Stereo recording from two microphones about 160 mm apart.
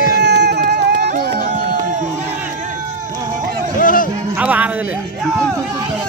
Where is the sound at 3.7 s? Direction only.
60° left (ahead or behind).